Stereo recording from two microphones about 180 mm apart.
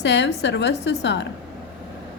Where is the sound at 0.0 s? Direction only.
70° left (ahead or behind).